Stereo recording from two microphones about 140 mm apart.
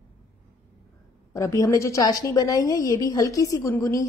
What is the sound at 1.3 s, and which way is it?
A woman's voice, 20° left (ahead or behind).